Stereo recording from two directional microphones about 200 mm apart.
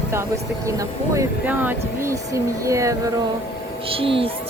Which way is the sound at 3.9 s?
25° right (ahead or behind).